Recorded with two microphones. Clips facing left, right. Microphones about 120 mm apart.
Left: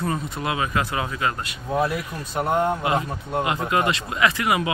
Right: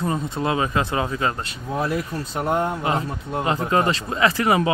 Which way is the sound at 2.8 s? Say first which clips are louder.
Even; 30° right (ahead or behind).